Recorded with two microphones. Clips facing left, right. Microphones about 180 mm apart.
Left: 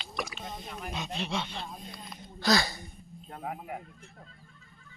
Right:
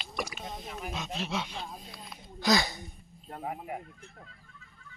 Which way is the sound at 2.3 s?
20° right (ahead or behind).